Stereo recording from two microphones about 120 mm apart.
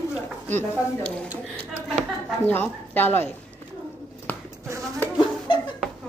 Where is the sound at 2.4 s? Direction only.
15° left (ahead or behind).